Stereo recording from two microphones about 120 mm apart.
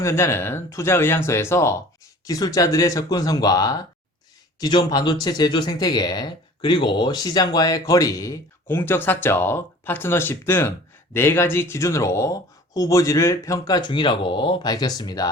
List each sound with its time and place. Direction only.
0.0 s speech: 20° left (ahead or behind)